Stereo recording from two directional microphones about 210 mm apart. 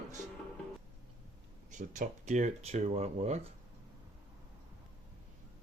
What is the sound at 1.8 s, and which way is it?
Speech, 35° right (ahead or behind).